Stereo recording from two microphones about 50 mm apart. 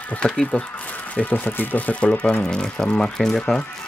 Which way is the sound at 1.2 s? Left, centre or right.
Left.